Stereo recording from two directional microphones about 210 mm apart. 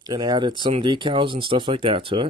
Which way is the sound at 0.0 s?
20° right (ahead or behind).